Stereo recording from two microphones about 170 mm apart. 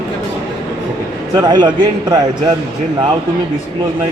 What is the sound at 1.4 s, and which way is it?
Speech, 25° right (ahead or behind).